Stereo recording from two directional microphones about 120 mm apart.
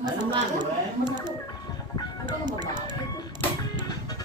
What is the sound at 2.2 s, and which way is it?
Music, 35° right (ahead or behind).